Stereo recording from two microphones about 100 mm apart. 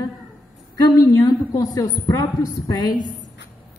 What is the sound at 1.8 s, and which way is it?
A woman's voice, 35° left (ahead or behind).